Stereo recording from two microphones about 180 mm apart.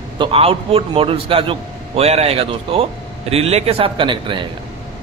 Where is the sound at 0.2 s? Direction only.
30° right (ahead or behind).